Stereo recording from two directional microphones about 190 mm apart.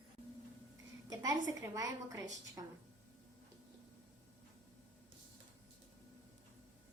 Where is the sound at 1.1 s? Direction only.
20° right (ahead or behind).